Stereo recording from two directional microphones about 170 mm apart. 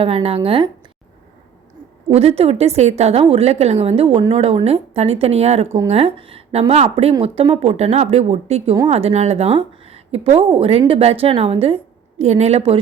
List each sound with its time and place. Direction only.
0.0 s a woman's voice: 35° right (ahead or behind)
2.0 s a woman's voice: 35° right (ahead or behind)